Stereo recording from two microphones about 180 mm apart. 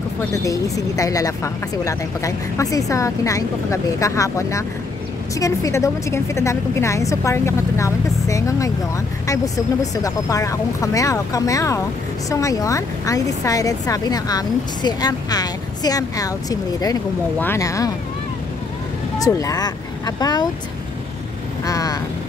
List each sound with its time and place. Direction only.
0.3 s a woman's voice: 20° left (ahead or behind)
19.1 s speech: 20° left (ahead or behind)
21.6 s speech: 20° left (ahead or behind)